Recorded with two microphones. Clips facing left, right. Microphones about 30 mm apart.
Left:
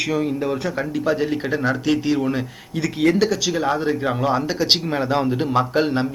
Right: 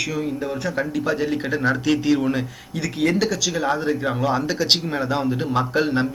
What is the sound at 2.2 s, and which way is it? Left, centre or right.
Speech, centre.